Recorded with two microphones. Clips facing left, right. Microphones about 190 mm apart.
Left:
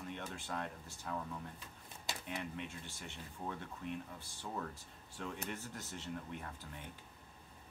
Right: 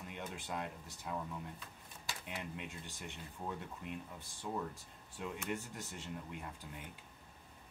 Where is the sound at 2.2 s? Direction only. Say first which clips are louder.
Left 2 dB; 15° right (ahead or behind).